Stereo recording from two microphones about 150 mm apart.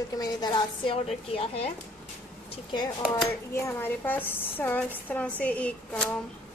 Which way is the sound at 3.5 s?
15° left (ahead or behind).